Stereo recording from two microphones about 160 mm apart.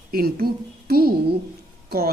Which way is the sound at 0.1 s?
70° right (ahead or behind).